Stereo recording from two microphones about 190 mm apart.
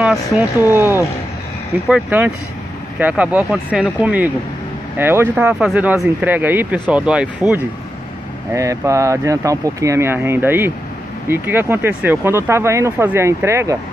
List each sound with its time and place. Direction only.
0.7 s speech: 10° right (ahead or behind)
8.5 s speech: 15° right (ahead or behind)